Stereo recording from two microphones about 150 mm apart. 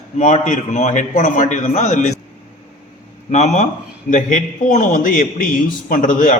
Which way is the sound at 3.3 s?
50° left (ahead or behind).